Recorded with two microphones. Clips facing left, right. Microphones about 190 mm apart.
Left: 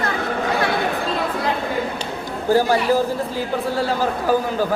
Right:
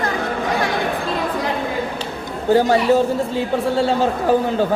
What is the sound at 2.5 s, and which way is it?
Speech, 25° right (ahead or behind).